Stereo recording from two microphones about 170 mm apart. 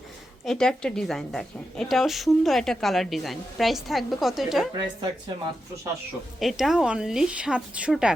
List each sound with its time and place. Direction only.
0.4 s a woman's voice: 5° left (ahead or behind)
4.7 s a woman's voice: 25° right (ahead or behind)
6.4 s a woman's voice: centre (ahead or behind)